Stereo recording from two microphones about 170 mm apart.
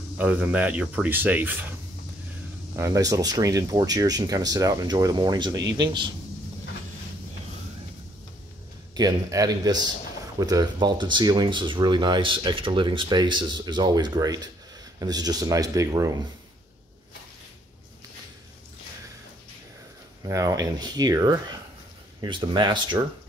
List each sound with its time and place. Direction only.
0.2 s speech: 10° right (ahead or behind); by 6.1 s 25° right (ahead or behind)
8.9 s speech: 20° right (ahead or behind)
20.2 s speech: 20° right (ahead or behind)